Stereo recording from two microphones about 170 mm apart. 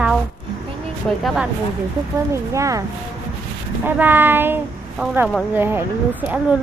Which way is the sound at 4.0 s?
10° right (ahead or behind).